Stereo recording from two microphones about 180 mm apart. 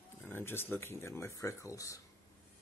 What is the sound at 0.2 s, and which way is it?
Speech, 10° left (ahead or behind).